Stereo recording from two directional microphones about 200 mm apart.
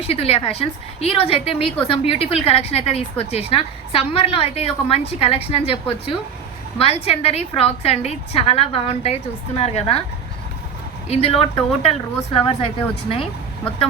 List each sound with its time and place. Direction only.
0.1 s a woman's voice: 30° left (ahead or behind)
11.1 s a woman's voice: 30° left (ahead or behind)